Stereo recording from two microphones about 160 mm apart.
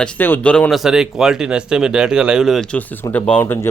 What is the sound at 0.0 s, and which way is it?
Speech, 10° left (ahead or behind).